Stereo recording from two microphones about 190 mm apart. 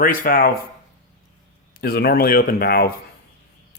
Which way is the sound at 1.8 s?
55° left (ahead or behind).